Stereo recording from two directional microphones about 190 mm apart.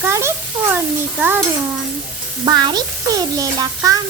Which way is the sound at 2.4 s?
20° right (ahead or behind).